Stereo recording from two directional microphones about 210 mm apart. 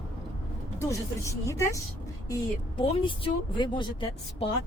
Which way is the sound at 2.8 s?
25° left (ahead or behind).